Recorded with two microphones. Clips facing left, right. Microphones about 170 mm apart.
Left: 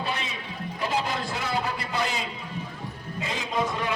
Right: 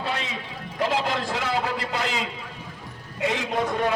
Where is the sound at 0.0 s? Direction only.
90° right.